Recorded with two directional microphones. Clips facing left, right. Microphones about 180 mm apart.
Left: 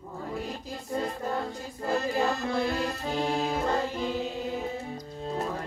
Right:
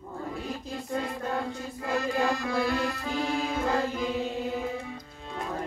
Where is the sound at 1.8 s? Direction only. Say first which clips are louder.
Left 1 dB; 35° left (ahead or behind).